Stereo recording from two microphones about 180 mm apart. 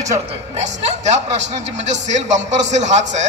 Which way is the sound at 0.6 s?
40° right (ahead or behind).